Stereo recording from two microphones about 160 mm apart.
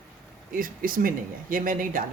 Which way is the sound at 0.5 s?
60° right (ahead or behind).